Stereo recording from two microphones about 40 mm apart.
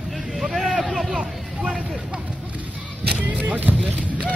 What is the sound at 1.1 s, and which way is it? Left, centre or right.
Hubbub, right.